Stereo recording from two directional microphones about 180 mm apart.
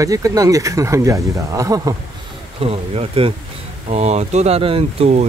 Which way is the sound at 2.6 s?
35° right (ahead or behind).